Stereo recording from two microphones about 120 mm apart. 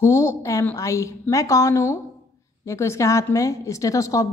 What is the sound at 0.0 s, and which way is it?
A woman's voice, 25° left (ahead or behind).